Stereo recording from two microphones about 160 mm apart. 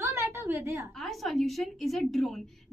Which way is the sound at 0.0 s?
20° right (ahead or behind).